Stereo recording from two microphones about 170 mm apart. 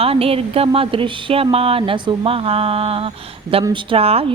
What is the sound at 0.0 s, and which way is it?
Speech, 35° right (ahead or behind).